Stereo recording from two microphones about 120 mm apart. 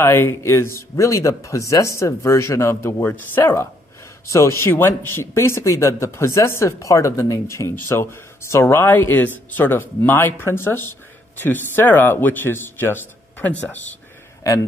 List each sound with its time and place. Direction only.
0.0 s speech: 20° left (ahead or behind)